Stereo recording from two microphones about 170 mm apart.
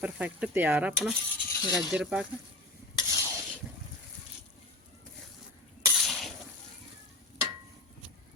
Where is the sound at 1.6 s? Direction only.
25° left (ahead or behind).